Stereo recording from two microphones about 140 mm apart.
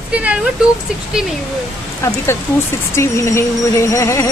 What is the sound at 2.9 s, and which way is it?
Speech, 20° left (ahead or behind).